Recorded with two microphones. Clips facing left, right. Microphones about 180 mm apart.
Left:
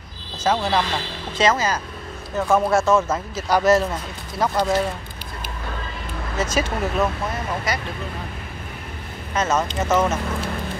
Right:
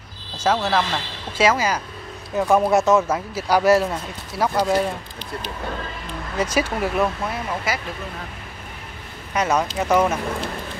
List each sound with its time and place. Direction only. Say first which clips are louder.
0.6 s speech: even; 5° right (ahead or behind)
6.3 s speech: right 1 dB; 15° right (ahead or behind)
9.3 s speech: right 1 dB; 15° right (ahead or behind)